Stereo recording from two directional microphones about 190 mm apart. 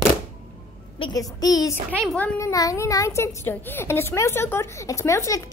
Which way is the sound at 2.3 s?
15° left (ahead or behind).